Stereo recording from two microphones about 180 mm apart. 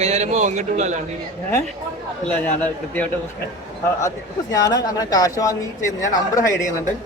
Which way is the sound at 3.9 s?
15° left (ahead or behind).